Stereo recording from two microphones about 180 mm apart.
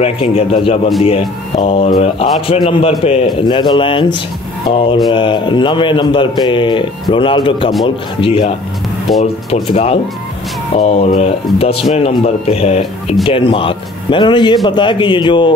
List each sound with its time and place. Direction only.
0.0 s a man's voice: 35° left (ahead or behind)